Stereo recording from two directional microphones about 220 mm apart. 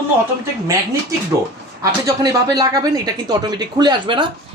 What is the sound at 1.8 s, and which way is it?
Speech, 15° right (ahead or behind).